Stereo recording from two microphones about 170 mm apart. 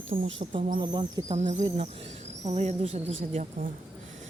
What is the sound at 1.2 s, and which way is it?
Speech, 45° right (ahead or behind).